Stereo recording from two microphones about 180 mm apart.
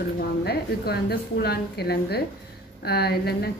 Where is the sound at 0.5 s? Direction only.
60° left (ahead or behind).